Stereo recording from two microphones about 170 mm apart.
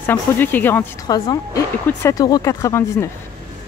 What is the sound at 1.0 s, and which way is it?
Speech, 20° left (ahead or behind).